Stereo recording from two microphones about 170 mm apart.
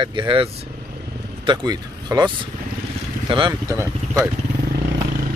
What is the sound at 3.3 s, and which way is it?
Speech, 25° right (ahead or behind).